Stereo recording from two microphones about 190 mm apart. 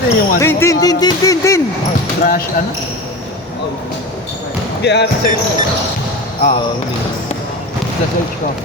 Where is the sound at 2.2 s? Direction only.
45° left (ahead or behind).